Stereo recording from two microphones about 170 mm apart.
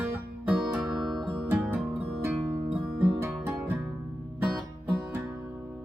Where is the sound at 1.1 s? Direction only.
25° right (ahead or behind).